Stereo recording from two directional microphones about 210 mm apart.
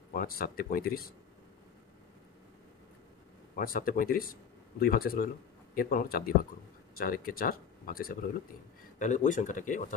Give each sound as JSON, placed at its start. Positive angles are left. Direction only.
{"t": 0.1, "sound": "speech", "side_deg": 45}
{"t": 3.5, "sound": "speech", "side_deg": 40}